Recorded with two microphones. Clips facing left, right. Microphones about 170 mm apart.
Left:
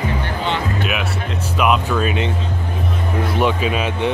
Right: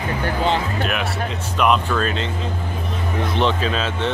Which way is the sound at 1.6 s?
5° left (ahead or behind).